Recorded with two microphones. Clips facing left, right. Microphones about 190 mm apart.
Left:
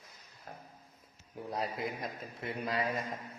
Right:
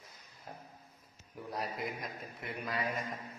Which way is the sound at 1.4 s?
25° left (ahead or behind).